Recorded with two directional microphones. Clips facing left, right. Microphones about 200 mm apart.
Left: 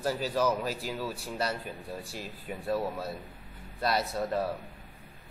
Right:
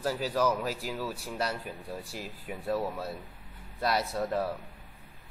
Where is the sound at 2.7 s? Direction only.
10° left (ahead or behind).